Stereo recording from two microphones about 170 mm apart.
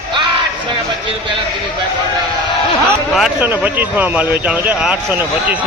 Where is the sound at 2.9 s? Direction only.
Centre (ahead or behind).